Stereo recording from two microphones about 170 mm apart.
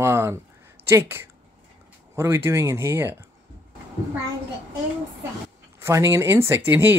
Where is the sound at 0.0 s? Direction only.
15° right (ahead or behind).